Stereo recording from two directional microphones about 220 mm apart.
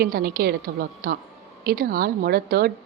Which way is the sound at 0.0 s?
45° right (ahead or behind).